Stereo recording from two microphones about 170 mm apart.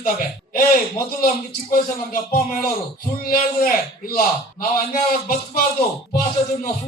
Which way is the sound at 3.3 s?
55° left (ahead or behind).